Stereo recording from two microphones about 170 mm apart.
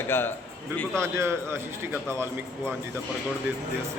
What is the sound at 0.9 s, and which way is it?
A man's voice, 15° right (ahead or behind).